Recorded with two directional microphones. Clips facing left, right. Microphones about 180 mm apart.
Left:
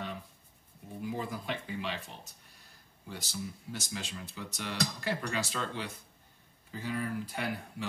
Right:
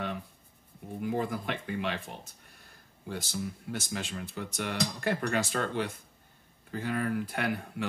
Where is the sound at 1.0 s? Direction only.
60° right (ahead or behind).